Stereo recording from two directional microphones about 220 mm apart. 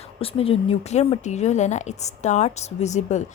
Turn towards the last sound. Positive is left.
turn(degrees=30)  # may be behind; listen again after turning